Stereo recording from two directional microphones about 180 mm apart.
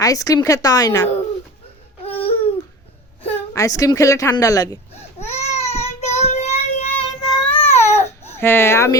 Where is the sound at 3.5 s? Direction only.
20° left (ahead or behind).